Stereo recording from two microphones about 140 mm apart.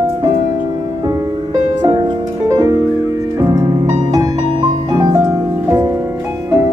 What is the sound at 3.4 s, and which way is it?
Music, 25° right (ahead or behind).